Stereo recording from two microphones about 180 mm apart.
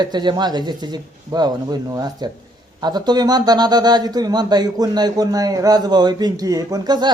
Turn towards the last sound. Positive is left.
turn(degrees=-25)  # may be behind; listen again after turning